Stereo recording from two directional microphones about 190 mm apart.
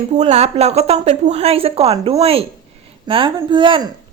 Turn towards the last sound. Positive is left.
turn(degrees=-25)  # may be behind; listen again after turning